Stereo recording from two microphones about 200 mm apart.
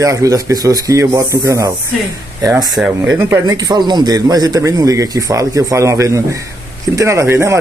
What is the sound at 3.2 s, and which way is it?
Speech, 15° right (ahead or behind).